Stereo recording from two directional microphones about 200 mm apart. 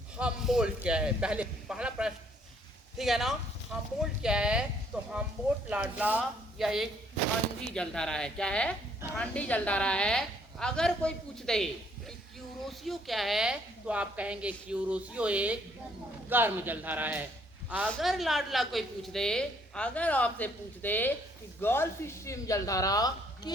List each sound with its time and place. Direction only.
0.2 s a woman's voice: 5° right (ahead or behind)
17.8 s a woman's voice: centre (ahead or behind); by 23.5 s 20° left (ahead or behind)